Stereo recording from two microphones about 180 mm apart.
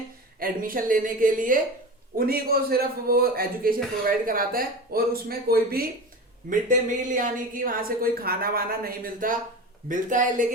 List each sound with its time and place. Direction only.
0.3 s a woman's voice: 55° right (ahead or behind)
6.5 s a woman's voice: 45° right (ahead or behind)